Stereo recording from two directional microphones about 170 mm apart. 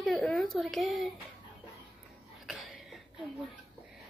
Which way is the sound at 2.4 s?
Centre (ahead or behind).